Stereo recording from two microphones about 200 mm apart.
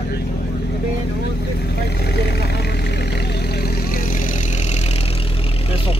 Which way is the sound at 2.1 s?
55° left (ahead or behind).